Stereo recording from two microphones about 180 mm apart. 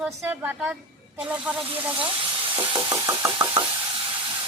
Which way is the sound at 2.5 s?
25° right (ahead or behind).